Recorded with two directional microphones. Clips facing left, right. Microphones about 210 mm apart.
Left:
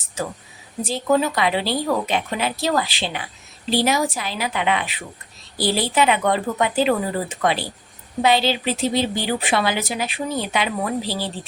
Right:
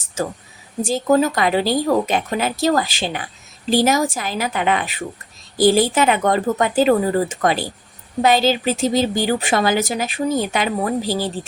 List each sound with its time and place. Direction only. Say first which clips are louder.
0.2 s speech: right 4 dB; 45° right (ahead or behind)